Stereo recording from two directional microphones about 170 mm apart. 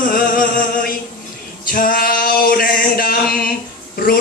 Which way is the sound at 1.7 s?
55° left (ahead or behind).